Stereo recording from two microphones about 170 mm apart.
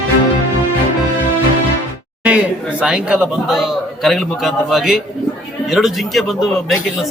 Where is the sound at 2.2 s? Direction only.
5° right (ahead or behind).